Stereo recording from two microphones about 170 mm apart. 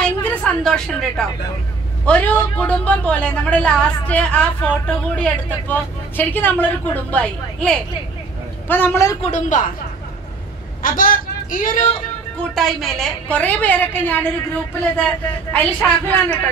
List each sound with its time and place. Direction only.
0.0 s a sound: 5° left (ahead or behind)
2.0 s a woman's voice: 10° left (ahead or behind)
9.2 s speech: 45° left (ahead or behind)
10.8 s speech: 55° left (ahead or behind)
12.4 s a woman's voice: centre (ahead or behind)